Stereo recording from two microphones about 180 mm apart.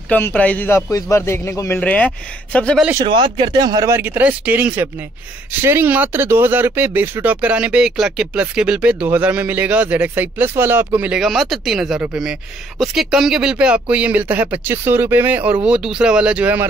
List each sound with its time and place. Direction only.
0.1 s a man's voice: 10° left (ahead or behind)
3.1 s speech: 25° right (ahead or behind); by 16.6 s 5° right (ahead or behind)